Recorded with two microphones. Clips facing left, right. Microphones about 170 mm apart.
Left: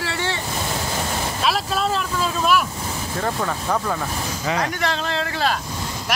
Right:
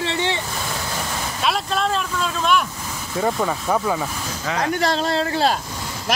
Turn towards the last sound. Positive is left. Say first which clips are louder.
# right 3 dB
turn(degrees=-35)  # may be behind; listen again after turning